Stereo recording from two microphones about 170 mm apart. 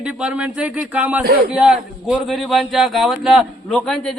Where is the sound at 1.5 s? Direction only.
5° right (ahead or behind).